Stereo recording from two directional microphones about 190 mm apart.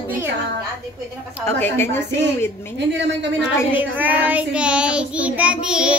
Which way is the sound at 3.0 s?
70° right (ahead or behind).